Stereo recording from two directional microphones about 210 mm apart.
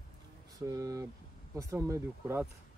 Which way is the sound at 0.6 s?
15° right (ahead or behind).